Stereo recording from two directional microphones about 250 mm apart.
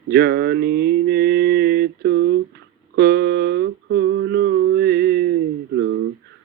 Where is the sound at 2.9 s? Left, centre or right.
Right.